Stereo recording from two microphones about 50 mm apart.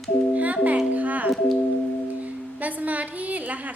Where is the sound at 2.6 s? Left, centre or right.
Right.